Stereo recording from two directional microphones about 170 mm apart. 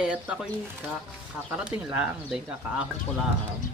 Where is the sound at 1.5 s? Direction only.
5° right (ahead or behind).